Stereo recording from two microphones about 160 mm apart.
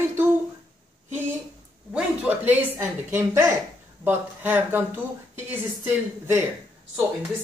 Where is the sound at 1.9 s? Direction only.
10° right (ahead or behind).